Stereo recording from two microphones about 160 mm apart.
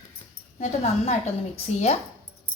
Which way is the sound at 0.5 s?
45° left (ahead or behind).